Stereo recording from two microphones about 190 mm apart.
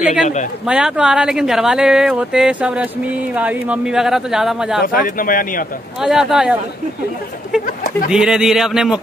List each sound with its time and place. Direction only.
0.7 s speech: 5° right (ahead or behind)
4.8 s speech: 45° left (ahead or behind)
5.9 s speech: centre (ahead or behind)
8.1 s speech: 5° right (ahead or behind)